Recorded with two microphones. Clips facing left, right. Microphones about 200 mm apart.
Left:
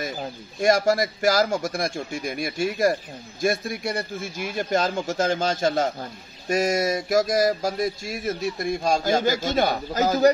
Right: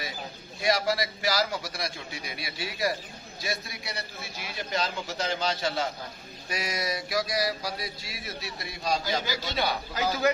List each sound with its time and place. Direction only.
0.6 s a man's voice: 50° left (ahead or behind)